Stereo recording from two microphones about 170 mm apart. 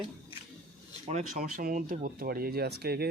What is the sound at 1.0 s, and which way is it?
Speech, 50° right (ahead or behind).